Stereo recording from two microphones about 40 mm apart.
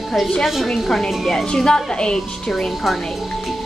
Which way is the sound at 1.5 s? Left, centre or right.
Centre.